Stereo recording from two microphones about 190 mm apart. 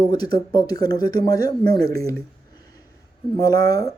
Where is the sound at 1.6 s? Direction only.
55° right (ahead or behind).